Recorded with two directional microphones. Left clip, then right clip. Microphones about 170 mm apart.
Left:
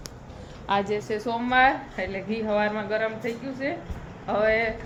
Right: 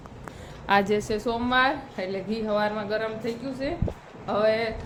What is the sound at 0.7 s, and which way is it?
Speech, 40° right (ahead or behind).